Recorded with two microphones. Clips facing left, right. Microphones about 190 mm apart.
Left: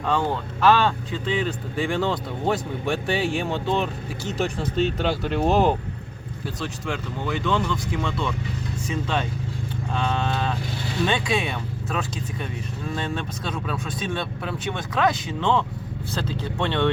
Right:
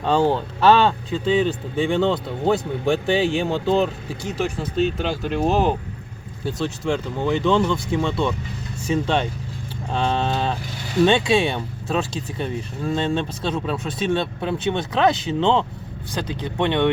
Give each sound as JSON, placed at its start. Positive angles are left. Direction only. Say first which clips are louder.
{"t": 0.0, "sound": "speech", "louder": "right 5 dB", "side_deg": -30}
{"t": 4.3, "sound": "speech", "louder": "right 1 dB", "side_deg": -5}
{"t": 6.4, "sound": "speech", "louder": "right 6 dB", "side_deg": -30}
{"t": 9.9, "sound": "a sound", "louder": "right 4 dB", "side_deg": -30}
{"t": 11.0, "sound": "speech", "louder": "right 7 dB", "side_deg": -25}